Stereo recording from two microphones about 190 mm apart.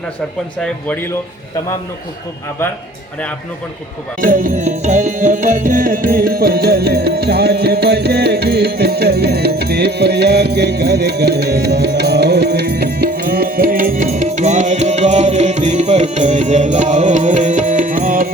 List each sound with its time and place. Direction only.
0.6 s speech: 10° left (ahead or behind)
4.2 s music: 45° right (ahead or behind)